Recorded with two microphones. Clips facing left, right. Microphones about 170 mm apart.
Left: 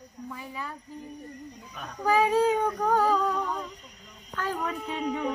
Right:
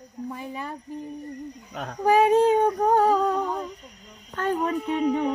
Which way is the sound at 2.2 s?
25° right (ahead or behind).